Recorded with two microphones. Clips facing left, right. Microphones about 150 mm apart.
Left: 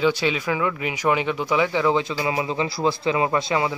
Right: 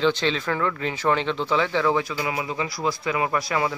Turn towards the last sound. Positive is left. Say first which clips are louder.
# left 2 dB
turn(degrees=20)  # may be behind; listen again after turning